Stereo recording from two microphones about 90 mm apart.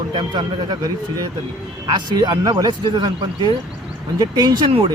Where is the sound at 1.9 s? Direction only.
55° right (ahead or behind).